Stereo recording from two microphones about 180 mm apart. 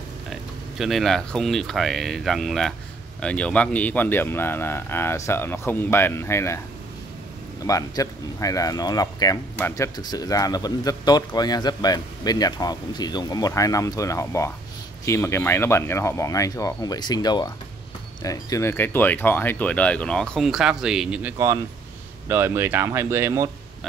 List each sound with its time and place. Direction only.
0.3 s a man's voice: centre (ahead or behind); by 6.6 s 15° left (ahead or behind)
7.6 s a man's voice: 20° left (ahead or behind); by 23.5 s 15° right (ahead or behind)